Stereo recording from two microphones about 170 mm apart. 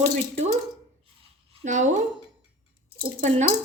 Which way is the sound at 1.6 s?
45° right (ahead or behind).